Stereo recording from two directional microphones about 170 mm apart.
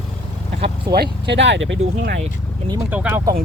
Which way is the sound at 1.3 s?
90° right.